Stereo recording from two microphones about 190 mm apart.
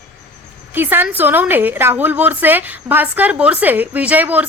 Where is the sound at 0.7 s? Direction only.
10° right (ahead or behind).